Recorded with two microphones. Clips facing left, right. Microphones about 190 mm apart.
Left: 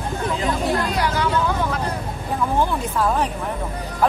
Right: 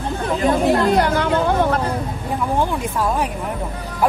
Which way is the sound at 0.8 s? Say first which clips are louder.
Right 5 dB; 55° right (ahead or behind).